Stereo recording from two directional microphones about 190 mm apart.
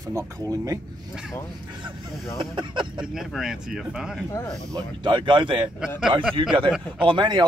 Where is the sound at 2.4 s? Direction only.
25° right (ahead or behind).